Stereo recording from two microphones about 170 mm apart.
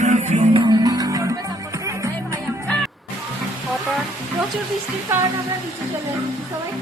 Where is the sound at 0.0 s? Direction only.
45° right (ahead or behind).